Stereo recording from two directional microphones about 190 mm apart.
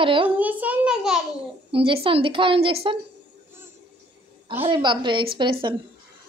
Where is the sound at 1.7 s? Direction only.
30° right (ahead or behind).